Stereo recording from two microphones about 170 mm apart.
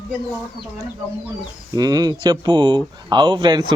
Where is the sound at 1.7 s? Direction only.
20° right (ahead or behind).